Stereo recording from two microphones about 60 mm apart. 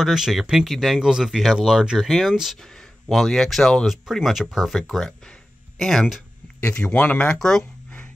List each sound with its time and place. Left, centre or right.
0.0 s speech: centre
2.6 s speech: centre
6.7 s speech: centre
7.3 s speech: centre